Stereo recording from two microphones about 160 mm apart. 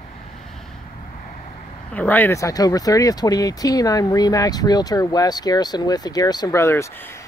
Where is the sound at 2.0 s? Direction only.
10° left (ahead or behind).